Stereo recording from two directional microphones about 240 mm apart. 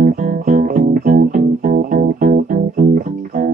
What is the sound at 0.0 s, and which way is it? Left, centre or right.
Music, right.